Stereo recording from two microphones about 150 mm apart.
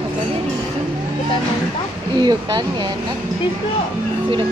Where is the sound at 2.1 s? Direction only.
30° right (ahead or behind).